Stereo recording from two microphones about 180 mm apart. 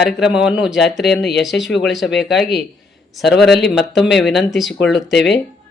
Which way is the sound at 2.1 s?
70° left (ahead or behind).